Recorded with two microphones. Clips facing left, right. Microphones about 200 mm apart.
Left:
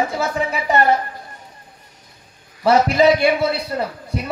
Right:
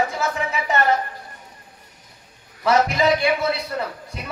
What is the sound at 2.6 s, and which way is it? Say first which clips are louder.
A man's voice: left 5 dB; 30° left (ahead or behind).